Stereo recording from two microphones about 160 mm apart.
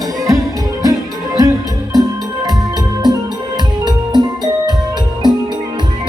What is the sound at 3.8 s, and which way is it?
Music, 25° right (ahead or behind).